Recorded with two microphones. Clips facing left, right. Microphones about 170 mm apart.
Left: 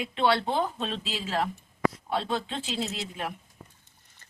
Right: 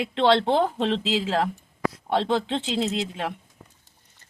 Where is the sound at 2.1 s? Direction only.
75° right (ahead or behind).